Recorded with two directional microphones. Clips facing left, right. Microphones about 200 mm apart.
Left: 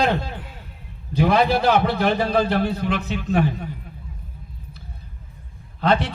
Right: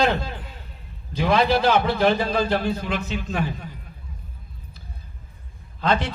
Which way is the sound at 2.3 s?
60° left (ahead or behind).